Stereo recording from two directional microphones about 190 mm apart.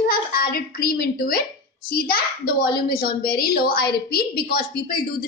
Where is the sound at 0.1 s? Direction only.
50° left (ahead or behind).